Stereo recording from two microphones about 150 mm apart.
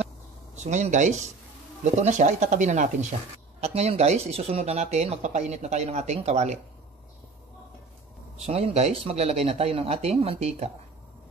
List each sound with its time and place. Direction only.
0.7 s speech: 50° right (ahead or behind)
8.4 s speech: 40° right (ahead or behind)